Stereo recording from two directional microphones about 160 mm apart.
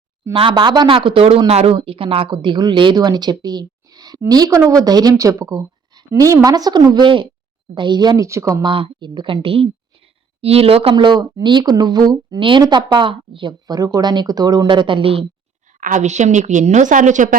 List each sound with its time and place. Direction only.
0.3 s speech: 30° right (ahead or behind)
8.7 s speech: 30° right (ahead or behind)
15.8 s a woman's voice: 50° right (ahead or behind)